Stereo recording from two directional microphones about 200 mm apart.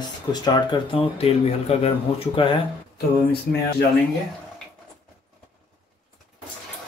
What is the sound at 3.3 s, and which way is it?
Speech, 50° left (ahead or behind).